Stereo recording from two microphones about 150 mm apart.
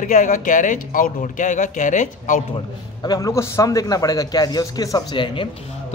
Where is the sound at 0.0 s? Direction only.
60° left (ahead or behind).